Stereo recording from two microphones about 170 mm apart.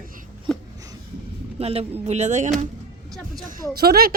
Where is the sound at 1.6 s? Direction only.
35° right (ahead or behind).